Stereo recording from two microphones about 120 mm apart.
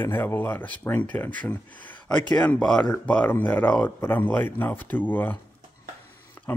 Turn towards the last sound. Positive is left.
turn(degrees=15)  # may be behind; listen again after turning